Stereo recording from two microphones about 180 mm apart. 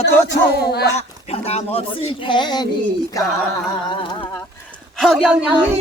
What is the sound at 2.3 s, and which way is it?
Speech, 25° left (ahead or behind).